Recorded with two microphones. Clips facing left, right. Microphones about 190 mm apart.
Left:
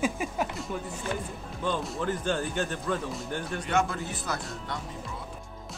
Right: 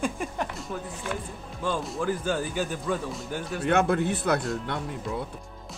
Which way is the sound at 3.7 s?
60° right (ahead or behind).